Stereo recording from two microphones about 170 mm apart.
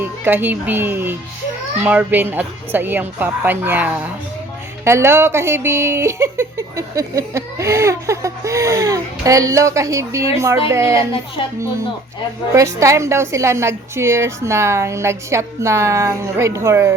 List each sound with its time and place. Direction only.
0.0 s speech: 10° right (ahead or behind)
12.5 s speech: 20° right (ahead or behind)